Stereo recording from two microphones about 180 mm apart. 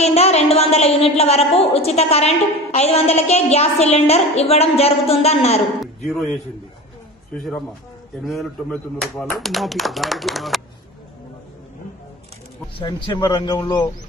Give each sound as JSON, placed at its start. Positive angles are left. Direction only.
{"t": 0.0, "sound": "a woman's voice", "side_deg": 35}
{"t": 6.0, "sound": "speech", "side_deg": 0}
{"t": 8.2, "sound": "speech", "side_deg": 0}
{"t": 12.7, "sound": "speech", "side_deg": 25}